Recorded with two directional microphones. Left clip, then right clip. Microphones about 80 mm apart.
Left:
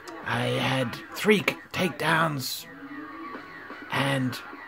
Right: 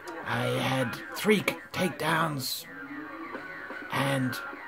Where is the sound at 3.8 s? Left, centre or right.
Centre.